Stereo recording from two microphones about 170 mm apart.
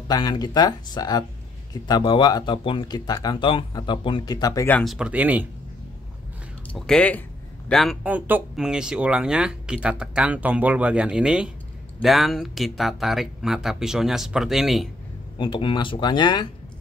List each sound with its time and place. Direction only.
0.1 s speech: 25° left (ahead or behind)
4.6 s speech: 5° left (ahead or behind)
4.9 s speech: 5° right (ahead or behind)
6.7 s speech: 5° left (ahead or behind)
15.3 s speech: 25° left (ahead or behind)